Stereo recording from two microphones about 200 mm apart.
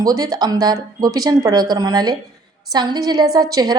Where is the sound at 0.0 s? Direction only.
20° right (ahead or behind).